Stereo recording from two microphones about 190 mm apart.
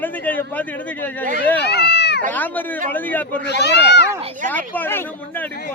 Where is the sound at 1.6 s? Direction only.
60° left (ahead or behind).